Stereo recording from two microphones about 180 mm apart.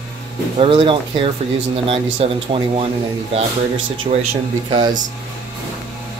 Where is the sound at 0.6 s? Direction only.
30° right (ahead or behind).